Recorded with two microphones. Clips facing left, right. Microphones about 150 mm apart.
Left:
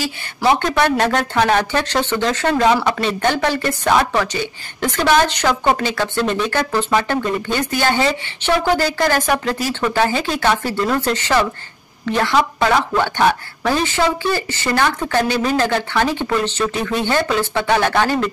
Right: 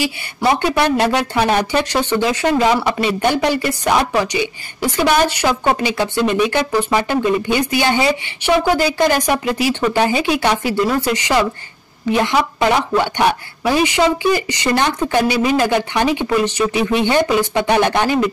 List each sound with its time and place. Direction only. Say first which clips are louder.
0.6 s speech: right 1 dB; 10° right (ahead or behind)